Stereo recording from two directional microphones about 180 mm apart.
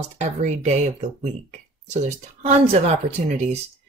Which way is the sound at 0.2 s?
40° right (ahead or behind).